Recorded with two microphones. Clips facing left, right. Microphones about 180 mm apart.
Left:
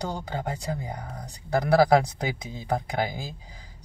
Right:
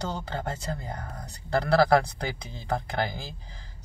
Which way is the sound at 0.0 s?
15° left (ahead or behind).